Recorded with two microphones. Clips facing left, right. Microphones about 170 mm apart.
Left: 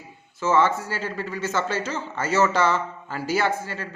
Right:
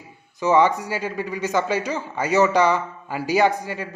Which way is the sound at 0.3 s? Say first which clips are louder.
Right 3 dB; 15° right (ahead or behind).